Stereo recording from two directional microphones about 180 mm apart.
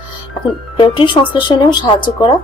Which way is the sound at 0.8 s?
30° left (ahead or behind).